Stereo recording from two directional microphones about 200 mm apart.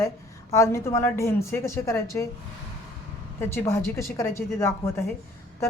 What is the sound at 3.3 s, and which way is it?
A woman's voice, 10° left (ahead or behind).